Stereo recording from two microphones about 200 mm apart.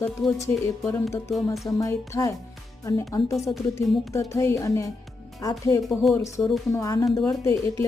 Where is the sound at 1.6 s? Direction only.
15° left (ahead or behind).